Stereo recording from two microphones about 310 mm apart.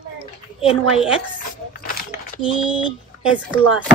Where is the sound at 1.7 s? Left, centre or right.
Left.